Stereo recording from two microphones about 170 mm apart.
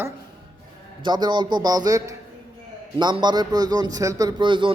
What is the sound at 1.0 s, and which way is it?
A man's voice, 25° right (ahead or behind).